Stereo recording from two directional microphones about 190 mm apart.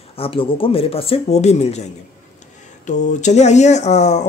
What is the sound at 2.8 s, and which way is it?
Speech, 40° left (ahead or behind).